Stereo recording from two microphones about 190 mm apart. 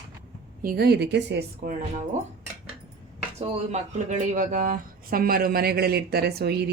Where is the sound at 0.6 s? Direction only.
55° right (ahead or behind).